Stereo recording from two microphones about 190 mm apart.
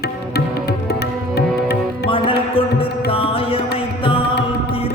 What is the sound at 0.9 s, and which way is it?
Music, 55° left (ahead or behind).